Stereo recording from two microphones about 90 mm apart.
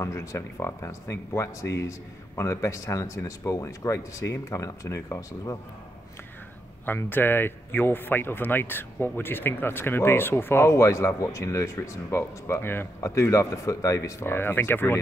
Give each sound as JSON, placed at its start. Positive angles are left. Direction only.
{"t": 0.0, "sound": "speech", "side_deg": 35}
{"t": 6.9, "sound": "speech", "side_deg": 25}